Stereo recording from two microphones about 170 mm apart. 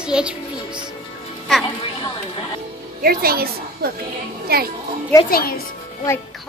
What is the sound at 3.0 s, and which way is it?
A woman's voice, 60° right (ahead or behind).